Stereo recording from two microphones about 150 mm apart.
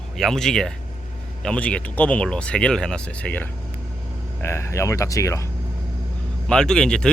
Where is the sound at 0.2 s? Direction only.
Centre (ahead or behind); by 5.5 s 20° left (ahead or behind).